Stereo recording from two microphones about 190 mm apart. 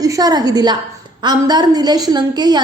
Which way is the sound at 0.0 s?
20° right (ahead or behind).